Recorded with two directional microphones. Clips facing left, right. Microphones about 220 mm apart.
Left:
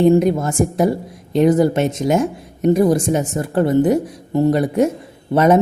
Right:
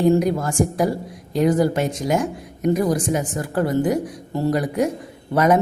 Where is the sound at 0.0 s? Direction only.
25° left (ahead or behind).